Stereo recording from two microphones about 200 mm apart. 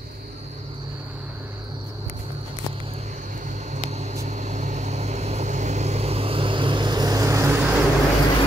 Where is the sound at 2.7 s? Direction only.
30° right (ahead or behind); by 7.6 s 15° right (ahead or behind).